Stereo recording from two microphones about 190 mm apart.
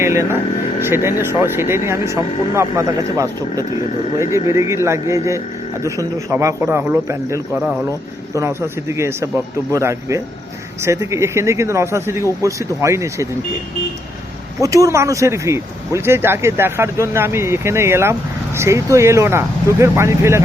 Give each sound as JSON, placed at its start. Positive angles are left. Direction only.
{"t": 0.0, "sound": "a sound", "side_deg": -15}
{"t": 0.8, "sound": "speech", "side_deg": -10}
{"t": 7.6, "sound": "speech", "side_deg": -5}
{"t": 14.6, "sound": "speech", "side_deg": -15}